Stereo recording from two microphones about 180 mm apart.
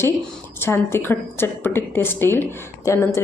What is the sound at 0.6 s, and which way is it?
A woman's voice, 15° left (ahead or behind).